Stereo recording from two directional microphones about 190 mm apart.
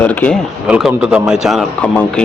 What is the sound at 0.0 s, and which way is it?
Speech, 10° left (ahead or behind).